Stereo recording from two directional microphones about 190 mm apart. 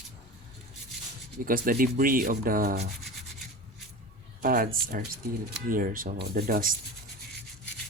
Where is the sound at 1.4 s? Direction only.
50° right (ahead or behind).